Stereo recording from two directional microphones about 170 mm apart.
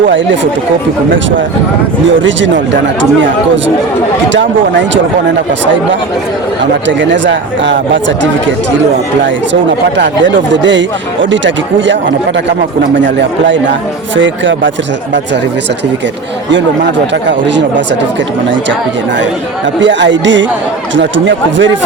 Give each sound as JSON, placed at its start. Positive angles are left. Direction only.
{"t": 2.0, "sound": "speech", "side_deg": -90}
{"t": 6.8, "sound": "speech", "side_deg": -90}
{"t": 10.0, "sound": "speech", "side_deg": -90}
{"t": 13.0, "sound": "speech", "side_deg": -90}
{"t": 17.2, "sound": "speech", "side_deg": -90}
{"t": 19.8, "sound": "speech", "side_deg": -90}